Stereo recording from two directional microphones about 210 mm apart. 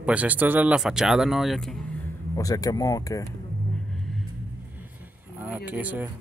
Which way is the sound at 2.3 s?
15° left (ahead or behind).